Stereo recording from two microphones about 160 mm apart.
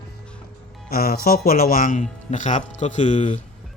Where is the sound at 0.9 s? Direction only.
70° left (ahead or behind).